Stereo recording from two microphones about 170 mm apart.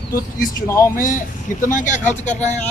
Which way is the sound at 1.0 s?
50° left (ahead or behind).